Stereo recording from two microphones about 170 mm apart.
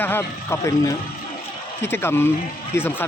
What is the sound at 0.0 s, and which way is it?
Speech, 15° left (ahead or behind).